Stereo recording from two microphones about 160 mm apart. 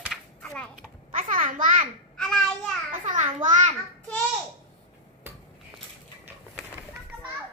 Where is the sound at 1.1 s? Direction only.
55° right (ahead or behind).